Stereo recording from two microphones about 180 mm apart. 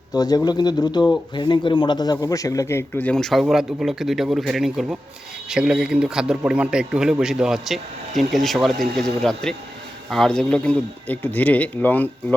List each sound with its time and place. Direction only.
0.1 s a man's voice: 20° left (ahead or behind)